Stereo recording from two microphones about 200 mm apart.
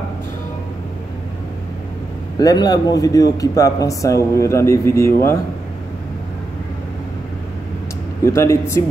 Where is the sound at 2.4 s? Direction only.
20° left (ahead or behind).